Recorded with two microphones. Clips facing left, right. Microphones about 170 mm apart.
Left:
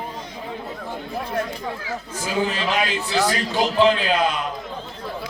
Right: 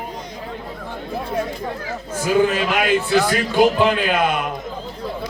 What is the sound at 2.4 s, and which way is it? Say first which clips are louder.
A man's voice: right 4 dB; 50° right (ahead or behind).